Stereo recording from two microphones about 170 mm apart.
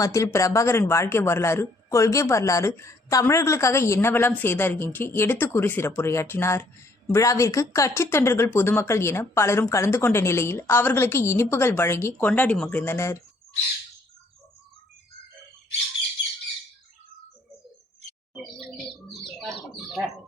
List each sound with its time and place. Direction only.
0.0 s speech: 20° left (ahead or behind)
19.0 s bird: centre (ahead or behind)